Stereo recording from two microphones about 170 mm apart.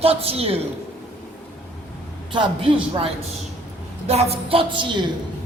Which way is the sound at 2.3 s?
30° right (ahead or behind).